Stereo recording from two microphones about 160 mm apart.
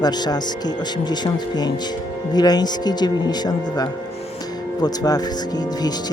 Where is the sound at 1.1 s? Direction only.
25° left (ahead or behind).